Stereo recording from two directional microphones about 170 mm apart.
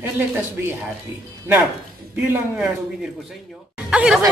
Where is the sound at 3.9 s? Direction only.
5° right (ahead or behind).